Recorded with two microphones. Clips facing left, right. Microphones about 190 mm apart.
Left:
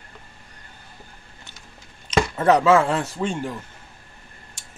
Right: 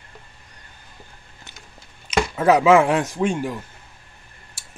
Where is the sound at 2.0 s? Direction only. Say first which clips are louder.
Right 1 dB; 5° right (ahead or behind).